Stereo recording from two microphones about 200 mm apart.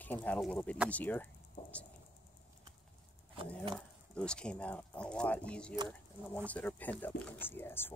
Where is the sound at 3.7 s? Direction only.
5° left (ahead or behind).